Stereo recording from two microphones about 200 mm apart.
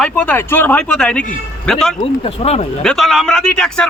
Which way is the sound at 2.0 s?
30° left (ahead or behind).